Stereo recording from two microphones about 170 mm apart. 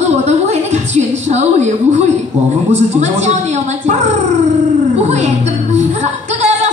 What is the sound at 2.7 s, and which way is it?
A woman's voice, 40° right (ahead or behind).